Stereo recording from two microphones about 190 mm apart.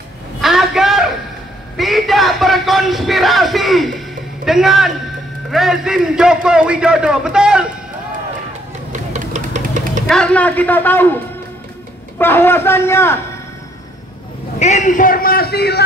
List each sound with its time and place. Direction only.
0.4 s a sound: centre (ahead or behind)
4.5 s a man's voice: centre (ahead or behind)
8.9 s vehicle: 40° right (ahead or behind)
10.0 s a man's voice: 5° left (ahead or behind)
12.2 s a man's voice: 10° left (ahead or behind)
14.6 s a man's voice: 40° left (ahead or behind); by 15.8 s 55° left (ahead or behind)